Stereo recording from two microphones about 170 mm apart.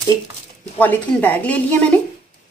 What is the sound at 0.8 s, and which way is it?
Speech, 10° left (ahead or behind).